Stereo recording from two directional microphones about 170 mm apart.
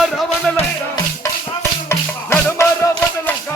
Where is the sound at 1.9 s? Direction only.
15° left (ahead or behind).